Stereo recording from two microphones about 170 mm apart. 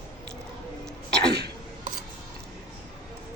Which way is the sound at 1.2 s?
75° right (ahead or behind).